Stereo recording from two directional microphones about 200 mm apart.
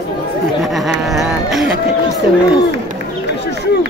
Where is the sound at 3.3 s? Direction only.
55° left (ahead or behind).